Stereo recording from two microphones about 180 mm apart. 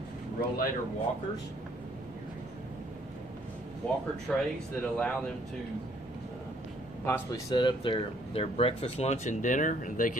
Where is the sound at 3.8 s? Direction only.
5° left (ahead or behind).